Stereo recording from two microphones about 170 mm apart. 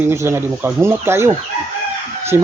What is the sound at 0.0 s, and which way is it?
Speech, 15° right (ahead or behind).